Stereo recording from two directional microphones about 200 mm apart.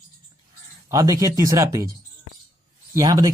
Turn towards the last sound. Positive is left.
turn(degrees=-15)  # may be behind; listen again after turning